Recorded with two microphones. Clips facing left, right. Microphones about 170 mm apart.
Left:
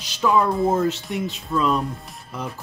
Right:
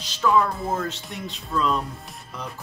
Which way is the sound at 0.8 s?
5° left (ahead or behind).